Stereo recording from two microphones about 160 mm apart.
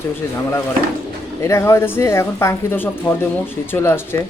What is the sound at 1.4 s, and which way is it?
Speech, 20° left (ahead or behind).